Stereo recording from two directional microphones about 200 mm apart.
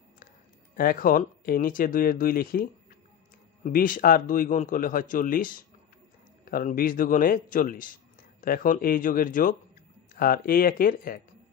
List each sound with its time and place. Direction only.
0.7 s speech: 45° left (ahead or behind)